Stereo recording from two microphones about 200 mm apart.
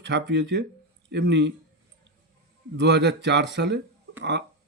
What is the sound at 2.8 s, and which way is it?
A man's voice, 60° right (ahead or behind).